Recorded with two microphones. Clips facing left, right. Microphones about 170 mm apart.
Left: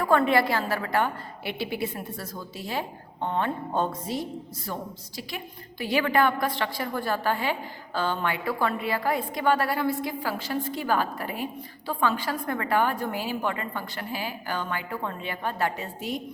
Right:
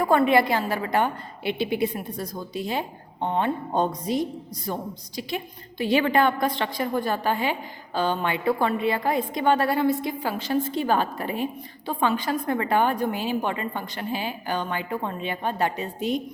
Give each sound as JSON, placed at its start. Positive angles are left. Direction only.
{"t": 0.0, "sound": "a woman's voice", "side_deg": -15}